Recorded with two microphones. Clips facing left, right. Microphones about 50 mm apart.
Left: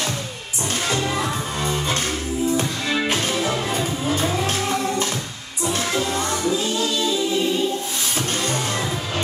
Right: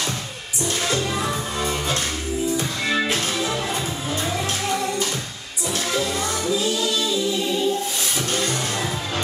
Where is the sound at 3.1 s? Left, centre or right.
Left.